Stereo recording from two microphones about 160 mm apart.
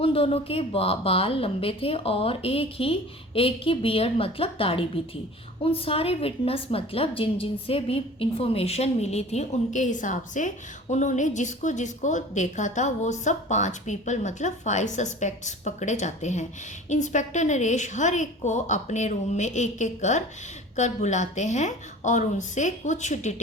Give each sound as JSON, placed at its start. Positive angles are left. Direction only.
{"t": 0.0, "sound": "a woman's voice", "side_deg": 35}